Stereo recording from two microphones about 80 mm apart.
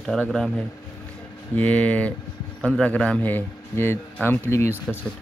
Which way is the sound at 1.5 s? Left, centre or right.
Centre.